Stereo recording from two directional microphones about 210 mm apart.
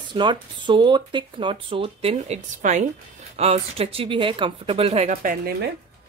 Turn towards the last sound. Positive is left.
turn(degrees=-40)  # may be behind; listen again after turning